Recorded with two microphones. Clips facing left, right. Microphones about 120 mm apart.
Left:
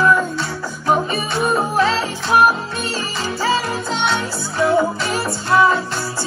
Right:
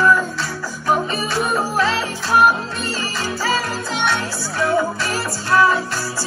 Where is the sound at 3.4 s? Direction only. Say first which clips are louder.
Left 3 dB; 25° left (ahead or behind).